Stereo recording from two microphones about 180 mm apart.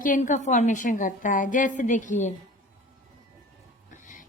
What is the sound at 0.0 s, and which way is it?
A woman's voice, 45° left (ahead or behind).